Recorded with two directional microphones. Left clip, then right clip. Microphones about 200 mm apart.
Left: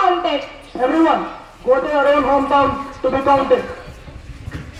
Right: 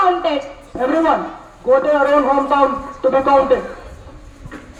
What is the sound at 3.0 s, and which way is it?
Speech, 30° left (ahead or behind).